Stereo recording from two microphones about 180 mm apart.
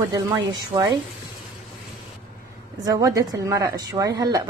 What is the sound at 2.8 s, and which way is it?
A woman's voice, 20° right (ahead or behind).